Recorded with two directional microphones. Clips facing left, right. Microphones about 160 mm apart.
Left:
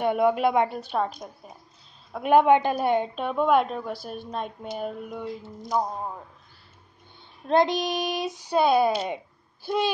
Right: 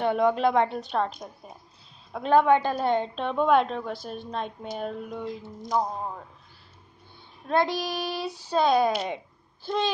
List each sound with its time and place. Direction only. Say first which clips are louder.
0.0 s a child's voice: left 1 dB; 10° left (ahead or behind)
2.2 s a woman's voice: left 2 dB; 15° left (ahead or behind)
7.4 s a child's voice: left 3 dB; 20° left (ahead or behind)